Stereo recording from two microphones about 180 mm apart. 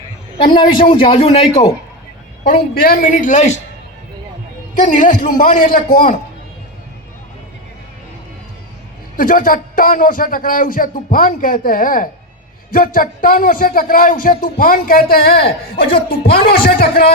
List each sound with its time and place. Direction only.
0.3 s a man's voice: 25° left (ahead or behind)
2.4 s speech: 55° left (ahead or behind)
4.7 s speech: 45° left (ahead or behind)
9.1 s speech: 50° left (ahead or behind)